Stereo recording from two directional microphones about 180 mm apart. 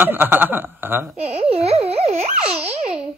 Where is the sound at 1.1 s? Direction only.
35° right (ahead or behind).